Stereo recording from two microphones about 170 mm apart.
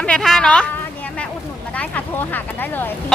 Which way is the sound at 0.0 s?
5° left (ahead or behind).